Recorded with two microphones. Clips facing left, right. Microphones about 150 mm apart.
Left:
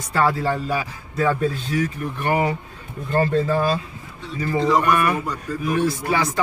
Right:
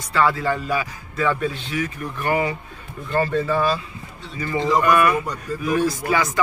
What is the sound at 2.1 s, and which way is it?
Speech, 25° left (ahead or behind).